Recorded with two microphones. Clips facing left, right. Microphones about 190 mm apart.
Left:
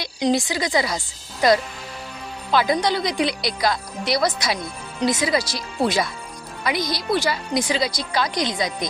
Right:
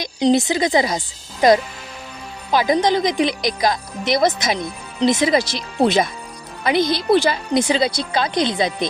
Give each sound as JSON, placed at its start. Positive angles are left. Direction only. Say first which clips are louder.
{"t": 0.2, "sound": "a woman's voice", "louder": "right 5 dB", "side_deg": -20}
{"t": 4.5, "sound": "speech", "louder": "right 4 dB", "side_deg": 10}
{"t": 5.0, "sound": "a woman's voice", "louder": "right 5 dB", "side_deg": -20}